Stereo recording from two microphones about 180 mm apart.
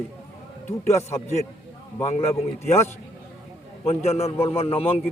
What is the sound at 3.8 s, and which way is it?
A man's voice, 35° left (ahead or behind).